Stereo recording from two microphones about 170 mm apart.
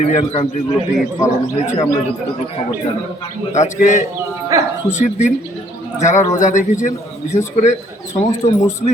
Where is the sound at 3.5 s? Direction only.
45° left (ahead or behind).